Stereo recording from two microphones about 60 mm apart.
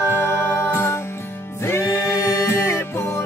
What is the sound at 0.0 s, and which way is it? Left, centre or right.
Music, left.